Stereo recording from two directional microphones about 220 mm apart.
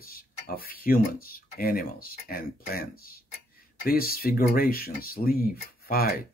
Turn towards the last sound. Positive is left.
turn(degrees=40)  # may be behind; listen again after turning